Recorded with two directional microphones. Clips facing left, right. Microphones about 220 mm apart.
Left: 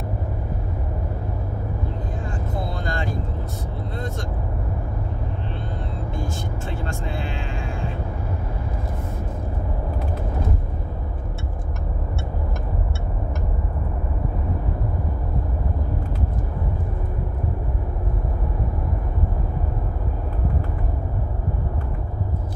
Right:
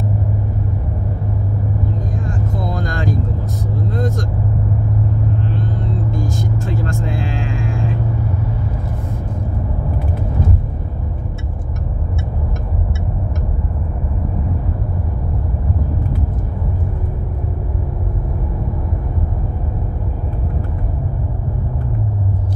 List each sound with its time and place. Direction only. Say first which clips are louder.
2.7 s vehicle: right 5 dB; 90° right
6.1 s vehicle: right 7 dB; 90° right